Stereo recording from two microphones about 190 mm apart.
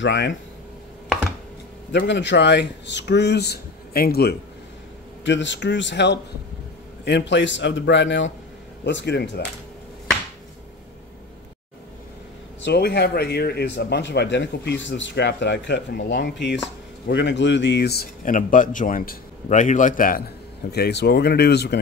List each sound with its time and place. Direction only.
0.0 s a man's voice: 70° left (ahead or behind)
1.9 s a man's voice: 70° left (ahead or behind)
5.2 s a man's voice: 70° left (ahead or behind)
12.6 s a man's voice: 60° left (ahead or behind)
20.7 s a man's voice: 60° left (ahead or behind)